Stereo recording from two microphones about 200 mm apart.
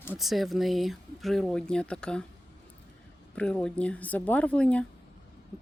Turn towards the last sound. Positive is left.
turn(degrees=5)  # may be behind; listen again after turning